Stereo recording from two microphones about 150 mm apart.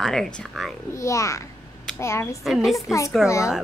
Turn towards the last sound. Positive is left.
turn(degrees=20)  # may be behind; listen again after turning